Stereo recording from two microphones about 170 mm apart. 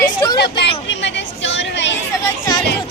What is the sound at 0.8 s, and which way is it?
Chatter, 90° left.